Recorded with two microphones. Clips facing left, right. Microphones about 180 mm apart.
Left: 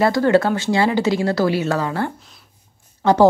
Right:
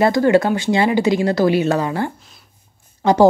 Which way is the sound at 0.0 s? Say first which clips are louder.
Right 1 dB; 15° right (ahead or behind).